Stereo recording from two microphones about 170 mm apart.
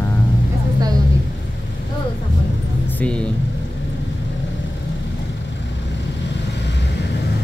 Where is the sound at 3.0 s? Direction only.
5° left (ahead or behind).